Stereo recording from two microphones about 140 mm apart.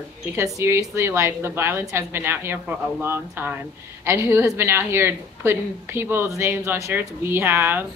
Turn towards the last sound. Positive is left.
turn(degrees=-15)  # may be behind; listen again after turning